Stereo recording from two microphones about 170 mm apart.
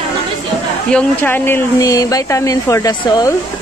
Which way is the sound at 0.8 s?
10° left (ahead or behind).